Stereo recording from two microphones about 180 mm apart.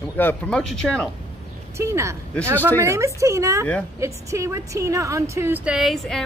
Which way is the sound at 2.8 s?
15° right (ahead or behind).